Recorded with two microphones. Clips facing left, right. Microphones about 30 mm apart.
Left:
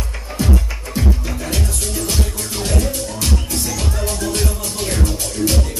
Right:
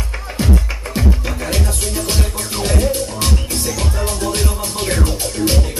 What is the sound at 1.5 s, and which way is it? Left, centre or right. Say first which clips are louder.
Music: right 2 dB; right.